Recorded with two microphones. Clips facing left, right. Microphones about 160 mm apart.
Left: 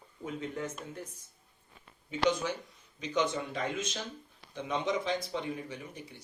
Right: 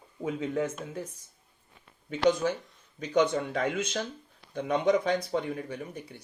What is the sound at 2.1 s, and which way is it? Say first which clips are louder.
Speech: right 5 dB; 50° right (ahead or behind).